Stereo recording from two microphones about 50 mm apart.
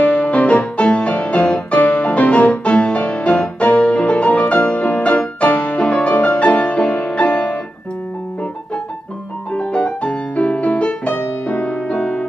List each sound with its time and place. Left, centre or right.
0.0 s music: left
9.5 s music: left